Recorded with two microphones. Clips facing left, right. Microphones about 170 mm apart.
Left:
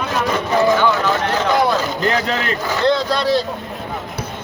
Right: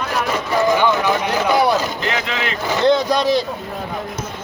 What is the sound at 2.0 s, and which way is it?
Speech, 40° left (ahead or behind).